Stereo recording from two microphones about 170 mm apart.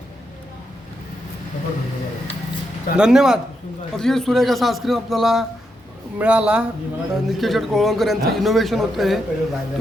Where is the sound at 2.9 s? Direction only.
5° right (ahead or behind).